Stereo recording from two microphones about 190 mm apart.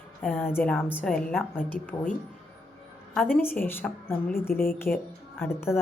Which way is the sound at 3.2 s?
10° left (ahead or behind).